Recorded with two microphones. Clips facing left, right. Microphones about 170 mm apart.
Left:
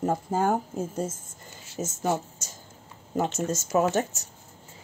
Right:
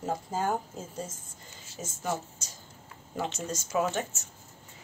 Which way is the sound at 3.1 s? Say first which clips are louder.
Left 7 dB; 45° left (ahead or behind).